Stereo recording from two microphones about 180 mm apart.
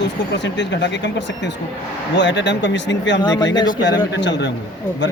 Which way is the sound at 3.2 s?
25° left (ahead or behind).